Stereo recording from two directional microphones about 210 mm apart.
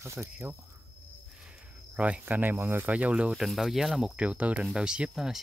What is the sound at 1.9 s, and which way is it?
Speech, 5° right (ahead or behind).